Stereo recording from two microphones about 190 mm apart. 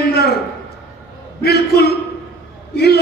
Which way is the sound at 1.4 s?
60° left (ahead or behind).